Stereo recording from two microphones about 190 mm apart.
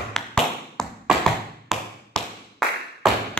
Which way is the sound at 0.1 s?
5° left (ahead or behind).